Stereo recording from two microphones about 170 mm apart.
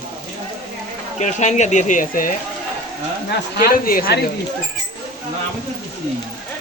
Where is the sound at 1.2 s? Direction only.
45° left (ahead or behind).